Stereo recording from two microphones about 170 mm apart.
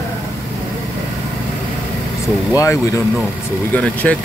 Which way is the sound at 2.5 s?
20° left (ahead or behind).